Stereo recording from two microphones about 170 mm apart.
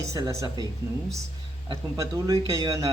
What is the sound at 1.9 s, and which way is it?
Speech, 20° right (ahead or behind).